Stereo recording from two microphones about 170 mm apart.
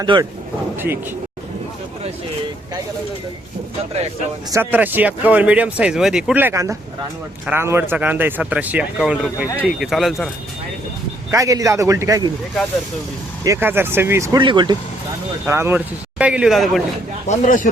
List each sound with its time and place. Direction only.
0.0 s speech: 25° right (ahead or behind)
4.5 s speech: 10° right (ahead or behind)
11.3 s speech: 20° right (ahead or behind)
13.4 s speech: 15° right (ahead or behind)
14.3 s speech: 25° right (ahead or behind)
15.4 s speech: 15° right (ahead or behind)
17.2 s speech: 50° left (ahead or behind)